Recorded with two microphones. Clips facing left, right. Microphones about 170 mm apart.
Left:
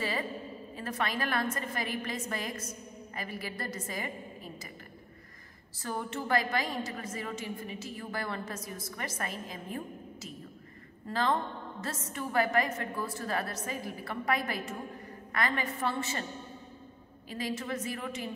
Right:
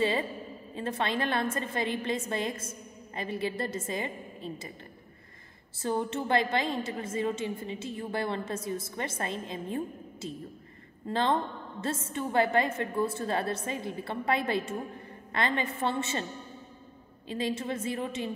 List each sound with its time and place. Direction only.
0.0 s a woman's voice: 25° right (ahead or behind)
5.8 s a woman's voice: 25° right (ahead or behind)
17.3 s a woman's voice: 25° right (ahead or behind)